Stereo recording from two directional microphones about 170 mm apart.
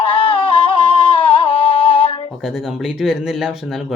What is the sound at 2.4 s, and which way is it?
Speech, centre (ahead or behind).